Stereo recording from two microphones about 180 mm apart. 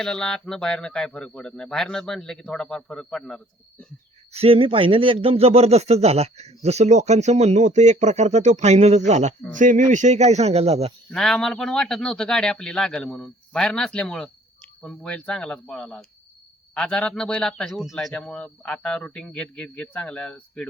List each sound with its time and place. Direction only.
0.0 s a man's voice: 5° left (ahead or behind)
4.3 s speech: 35° right (ahead or behind)
11.1 s a man's voice: 5° left (ahead or behind)